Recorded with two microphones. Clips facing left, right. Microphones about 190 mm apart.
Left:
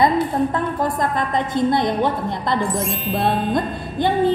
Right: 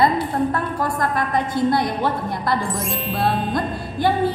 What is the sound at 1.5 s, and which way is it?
Speech, 20° left (ahead or behind).